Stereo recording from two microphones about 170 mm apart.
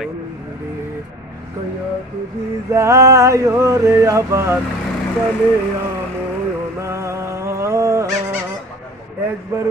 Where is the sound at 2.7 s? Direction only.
15° right (ahead or behind).